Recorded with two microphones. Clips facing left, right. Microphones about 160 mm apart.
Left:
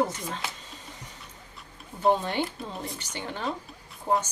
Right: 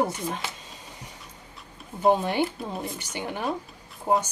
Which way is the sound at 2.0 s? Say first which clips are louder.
Right 3 dB; 15° right (ahead or behind).